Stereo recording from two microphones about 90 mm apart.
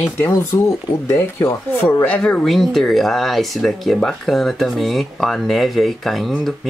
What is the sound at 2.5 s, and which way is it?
Speech, centre (ahead or behind).